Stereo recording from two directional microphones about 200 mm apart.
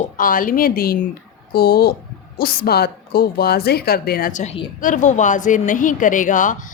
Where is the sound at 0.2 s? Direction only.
45° left (ahead or behind).